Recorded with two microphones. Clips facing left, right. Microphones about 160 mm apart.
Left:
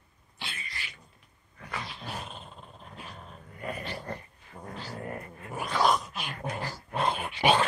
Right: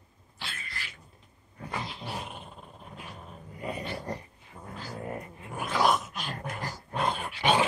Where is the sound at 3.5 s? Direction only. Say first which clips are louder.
Right 1 dB; 20° right (ahead or behind).